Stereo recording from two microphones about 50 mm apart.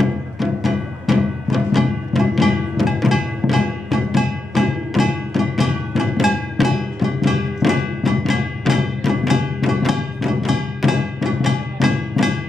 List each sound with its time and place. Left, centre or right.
0.0 s music: centre